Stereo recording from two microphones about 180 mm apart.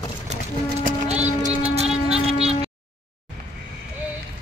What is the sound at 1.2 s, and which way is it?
Vehicle, 35° right (ahead or behind).